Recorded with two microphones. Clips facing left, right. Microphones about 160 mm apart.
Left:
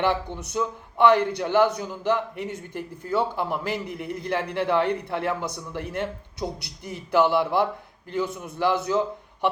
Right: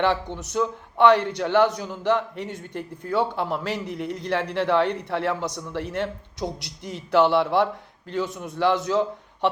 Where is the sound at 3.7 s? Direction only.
55° left (ahead or behind).